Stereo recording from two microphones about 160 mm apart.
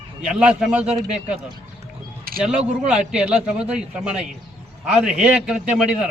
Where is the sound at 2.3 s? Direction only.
70° right (ahead or behind).